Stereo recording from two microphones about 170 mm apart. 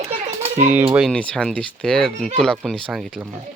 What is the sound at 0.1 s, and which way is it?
Children playing, 35° right (ahead or behind).